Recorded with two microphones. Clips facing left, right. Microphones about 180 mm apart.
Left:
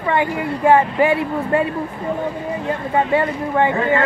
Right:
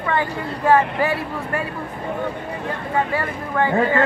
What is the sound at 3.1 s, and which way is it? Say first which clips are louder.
Speech: left 6 dB; 20° left (ahead or behind).